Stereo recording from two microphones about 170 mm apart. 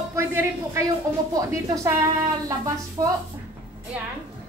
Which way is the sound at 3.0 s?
20° right (ahead or behind).